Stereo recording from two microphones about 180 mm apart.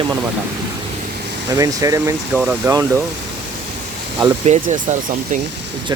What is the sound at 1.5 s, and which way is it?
Speech, 20° right (ahead or behind).